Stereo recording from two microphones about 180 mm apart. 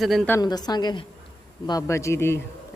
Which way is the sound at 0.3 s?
20° left (ahead or behind).